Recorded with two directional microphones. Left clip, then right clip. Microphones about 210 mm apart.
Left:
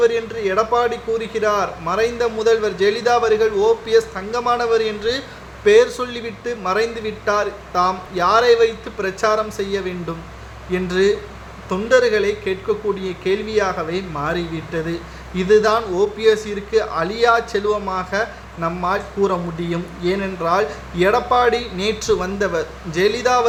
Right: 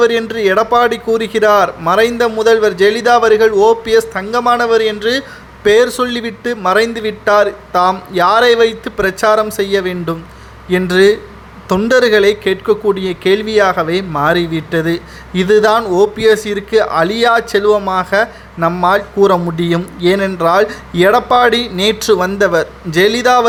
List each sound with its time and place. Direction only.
0.0 s a man's voice: 45° right (ahead or behind)